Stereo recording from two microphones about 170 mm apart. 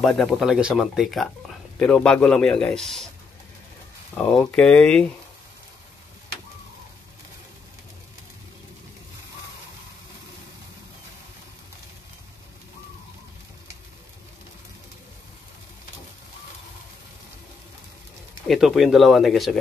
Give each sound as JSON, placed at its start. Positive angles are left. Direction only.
{"t": 0.0, "sound": "a man's voice", "side_deg": 0}
{"t": 4.1, "sound": "speech", "side_deg": 5}
{"t": 18.5, "sound": "a man's voice", "side_deg": 0}